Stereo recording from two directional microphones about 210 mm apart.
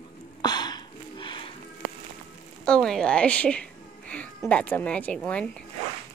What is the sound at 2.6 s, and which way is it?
Speech, 5° left (ahead or behind).